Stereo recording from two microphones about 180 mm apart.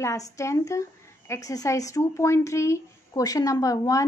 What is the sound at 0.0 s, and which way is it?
A woman's voice, 15° left (ahead or behind).